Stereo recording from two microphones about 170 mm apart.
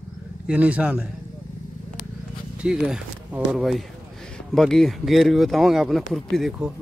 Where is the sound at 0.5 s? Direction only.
10° right (ahead or behind).